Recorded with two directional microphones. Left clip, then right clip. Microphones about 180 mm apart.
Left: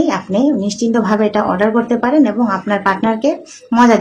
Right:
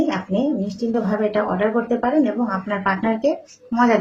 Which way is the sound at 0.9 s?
30° left (ahead or behind).